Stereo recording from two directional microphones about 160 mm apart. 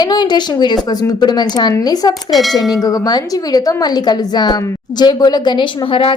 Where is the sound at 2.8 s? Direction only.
20° left (ahead or behind).